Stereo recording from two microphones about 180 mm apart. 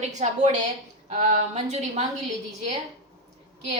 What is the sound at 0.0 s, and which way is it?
A woman's voice, 40° right (ahead or behind).